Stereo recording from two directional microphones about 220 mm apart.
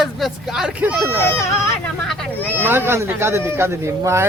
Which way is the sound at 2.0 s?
Centre (ahead or behind).